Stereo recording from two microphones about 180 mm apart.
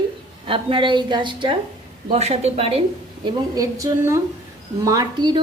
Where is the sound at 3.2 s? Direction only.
20° right (ahead or behind).